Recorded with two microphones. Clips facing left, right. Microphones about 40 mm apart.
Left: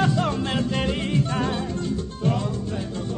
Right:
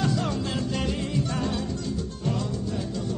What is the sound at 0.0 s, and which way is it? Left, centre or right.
Music, left.